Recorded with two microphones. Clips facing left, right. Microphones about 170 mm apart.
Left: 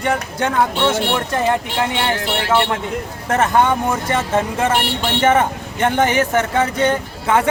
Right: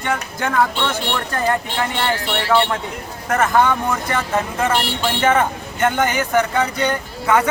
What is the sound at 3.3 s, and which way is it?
Speech, 25° left (ahead or behind).